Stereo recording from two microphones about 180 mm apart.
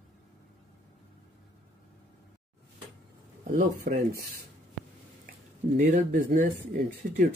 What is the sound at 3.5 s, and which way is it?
Speech, 55° right (ahead or behind).